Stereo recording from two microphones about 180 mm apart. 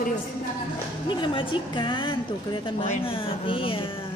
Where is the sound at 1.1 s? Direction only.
25° left (ahead or behind).